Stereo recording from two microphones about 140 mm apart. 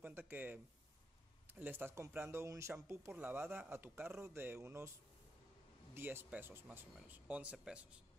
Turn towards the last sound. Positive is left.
turn(degrees=-10)  # may be behind; listen again after turning